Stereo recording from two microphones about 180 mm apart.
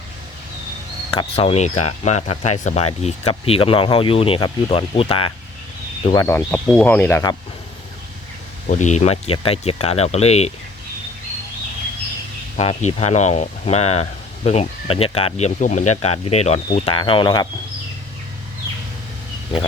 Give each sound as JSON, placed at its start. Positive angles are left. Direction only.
{"t": 1.1, "sound": "speech", "side_deg": 30}
{"t": 6.1, "sound": "speech", "side_deg": 20}
{"t": 8.7, "sound": "speech", "side_deg": 40}
{"t": 12.5, "sound": "speech", "side_deg": 40}